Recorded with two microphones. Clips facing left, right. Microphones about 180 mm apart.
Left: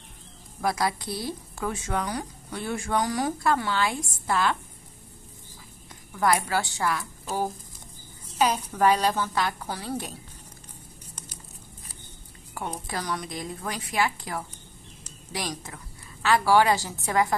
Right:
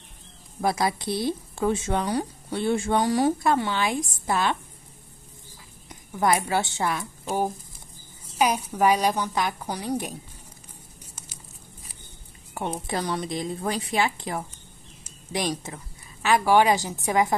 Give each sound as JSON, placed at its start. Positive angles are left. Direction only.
{"t": 0.6, "sound": "a woman's voice", "side_deg": -25}
{"t": 5.9, "sound": "a woman's voice", "side_deg": -20}
{"t": 8.4, "sound": "a woman's voice", "side_deg": -10}
{"t": 12.8, "sound": "a woman's voice", "side_deg": -25}